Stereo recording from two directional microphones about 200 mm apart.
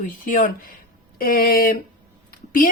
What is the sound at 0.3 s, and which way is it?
Speech, 40° left (ahead or behind).